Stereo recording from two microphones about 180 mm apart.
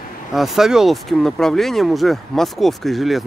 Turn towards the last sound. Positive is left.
turn(degrees=0)  # may be behind; listen again after turning